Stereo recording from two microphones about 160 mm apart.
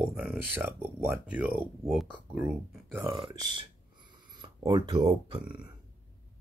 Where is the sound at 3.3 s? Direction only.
30° right (ahead or behind).